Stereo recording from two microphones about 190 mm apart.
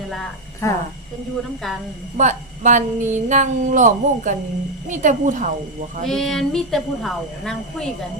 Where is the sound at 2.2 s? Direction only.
40° right (ahead or behind).